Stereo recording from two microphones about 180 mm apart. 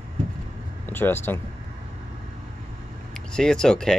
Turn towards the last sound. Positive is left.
turn(degrees=5)  # may be behind; listen again after turning